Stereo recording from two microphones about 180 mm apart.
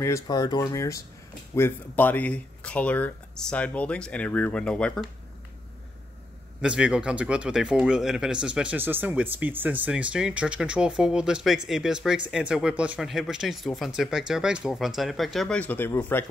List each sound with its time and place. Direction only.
0.0 s speech: 20° left (ahead or behind)
6.6 s speech: 5° right (ahead or behind); by 16.3 s 10° left (ahead or behind)